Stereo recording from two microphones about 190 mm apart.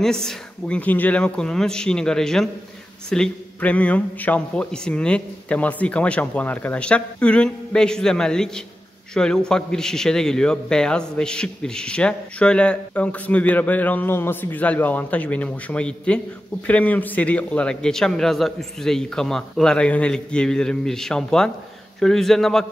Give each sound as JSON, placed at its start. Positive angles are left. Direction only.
{"t": 0.0, "sound": "a man's voice", "side_deg": 0}